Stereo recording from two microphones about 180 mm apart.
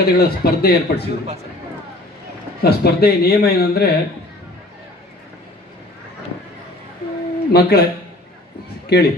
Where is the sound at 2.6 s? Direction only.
60° left (ahead or behind).